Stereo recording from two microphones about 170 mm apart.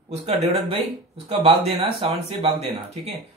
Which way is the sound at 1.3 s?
35° right (ahead or behind).